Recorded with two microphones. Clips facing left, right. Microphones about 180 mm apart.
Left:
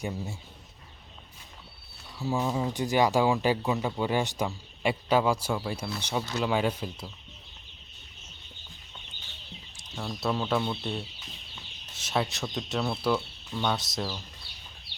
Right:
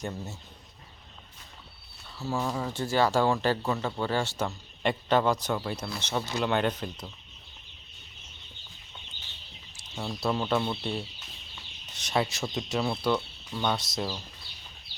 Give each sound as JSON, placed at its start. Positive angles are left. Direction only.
{"t": 0.0, "sound": "speech", "side_deg": 10}
{"t": 2.1, "sound": "speech", "side_deg": 15}
{"t": 9.9, "sound": "speech", "side_deg": 0}